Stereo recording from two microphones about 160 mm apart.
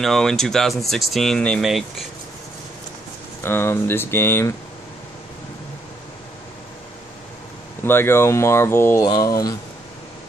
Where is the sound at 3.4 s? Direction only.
15° left (ahead or behind).